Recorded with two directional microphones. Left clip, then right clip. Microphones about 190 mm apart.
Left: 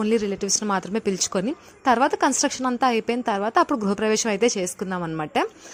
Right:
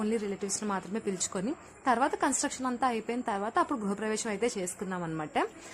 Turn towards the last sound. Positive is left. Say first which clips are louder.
# left 7 dB
turn(degrees=35)  # may be behind; listen again after turning